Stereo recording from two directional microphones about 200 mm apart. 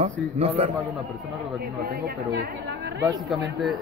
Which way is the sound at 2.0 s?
55° right (ahead or behind).